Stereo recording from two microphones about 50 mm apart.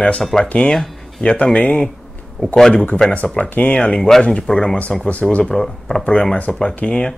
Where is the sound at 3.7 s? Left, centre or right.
Centre.